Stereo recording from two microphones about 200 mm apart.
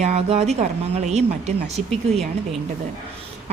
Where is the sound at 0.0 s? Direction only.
30° right (ahead or behind).